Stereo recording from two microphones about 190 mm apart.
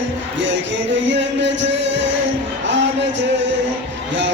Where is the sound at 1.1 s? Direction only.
70° right (ahead or behind).